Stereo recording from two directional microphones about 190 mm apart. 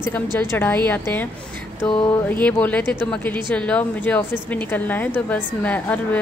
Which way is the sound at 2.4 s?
10° left (ahead or behind).